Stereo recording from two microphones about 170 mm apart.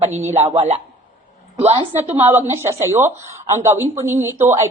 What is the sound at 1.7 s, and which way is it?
A woman's voice, 15° right (ahead or behind).